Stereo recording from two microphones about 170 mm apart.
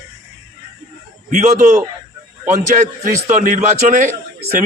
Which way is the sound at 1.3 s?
45° right (ahead or behind).